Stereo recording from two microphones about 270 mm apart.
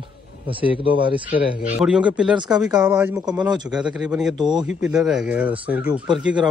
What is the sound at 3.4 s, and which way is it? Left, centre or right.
Speech, centre.